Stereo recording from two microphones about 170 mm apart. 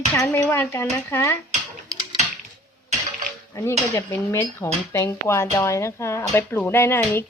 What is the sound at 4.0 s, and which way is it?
Speech, 15° left (ahead or behind).